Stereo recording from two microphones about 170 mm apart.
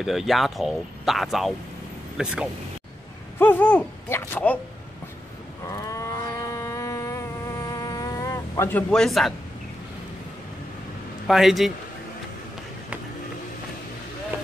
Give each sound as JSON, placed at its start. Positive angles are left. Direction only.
{"t": 0.0, "sound": "speech", "side_deg": 0}
{"t": 3.3, "sound": "speech", "side_deg": 10}
{"t": 5.7, "sound": "insect", "side_deg": 20}
{"t": 11.2, "sound": "speech", "side_deg": 0}